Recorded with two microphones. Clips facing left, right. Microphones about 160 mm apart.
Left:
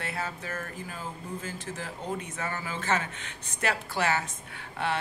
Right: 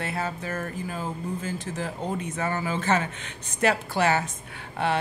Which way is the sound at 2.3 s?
30° right (ahead or behind).